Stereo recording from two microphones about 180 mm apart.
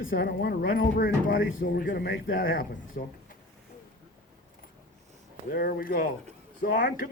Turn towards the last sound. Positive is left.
turn(degrees=50)  # may be behind; listen again after turning